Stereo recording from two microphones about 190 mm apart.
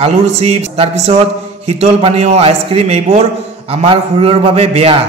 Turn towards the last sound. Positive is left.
turn(degrees=-30)  # may be behind; listen again after turning